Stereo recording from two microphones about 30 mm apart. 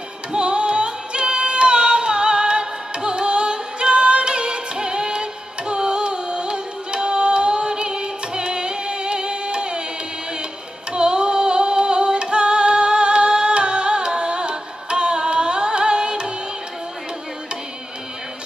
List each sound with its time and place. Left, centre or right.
0.3 s singing: right
10.9 s music: right